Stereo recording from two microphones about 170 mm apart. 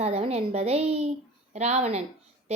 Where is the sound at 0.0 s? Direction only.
35° right (ahead or behind).